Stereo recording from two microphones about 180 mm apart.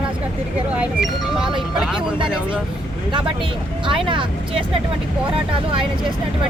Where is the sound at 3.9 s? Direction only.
30° right (ahead or behind).